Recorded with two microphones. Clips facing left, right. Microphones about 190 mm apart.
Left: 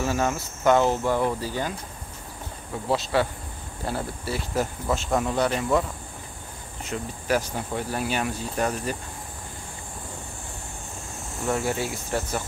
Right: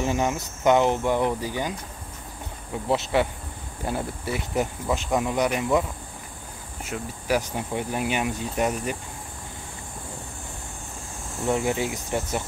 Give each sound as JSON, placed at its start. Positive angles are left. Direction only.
{"t": 0.0, "sound": "speech", "side_deg": -15}
{"t": 2.9, "sound": "speech", "side_deg": -20}
{"t": 11.4, "sound": "speech", "side_deg": -15}